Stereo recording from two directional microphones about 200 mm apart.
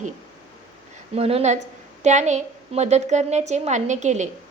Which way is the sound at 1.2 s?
30° right (ahead or behind).